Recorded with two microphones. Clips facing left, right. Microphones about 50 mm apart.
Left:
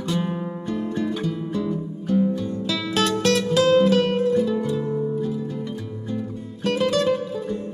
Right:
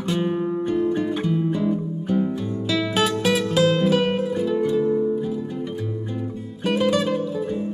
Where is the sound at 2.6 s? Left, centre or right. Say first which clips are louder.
Right 2 dB; centre.